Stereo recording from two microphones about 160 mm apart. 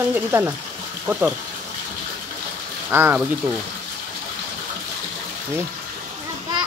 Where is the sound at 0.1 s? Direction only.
15° right (ahead or behind).